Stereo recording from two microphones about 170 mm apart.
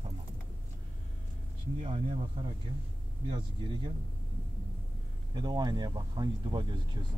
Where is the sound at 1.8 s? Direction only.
35° right (ahead or behind).